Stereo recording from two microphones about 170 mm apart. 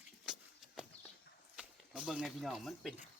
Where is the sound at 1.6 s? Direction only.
5° right (ahead or behind).